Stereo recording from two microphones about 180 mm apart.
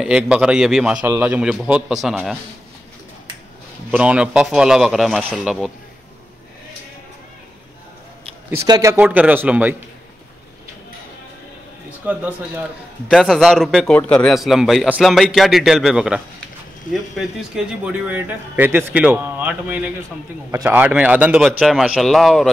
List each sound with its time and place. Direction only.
0.0 s a man's voice: 5° right (ahead or behind)
3.9 s a man's voice: 5° right (ahead or behind)
8.5 s a man's voice: 20° right (ahead or behind)
8.9 s a man's voice: 10° right (ahead or behind)
12.1 s a man's voice: 10° right (ahead or behind)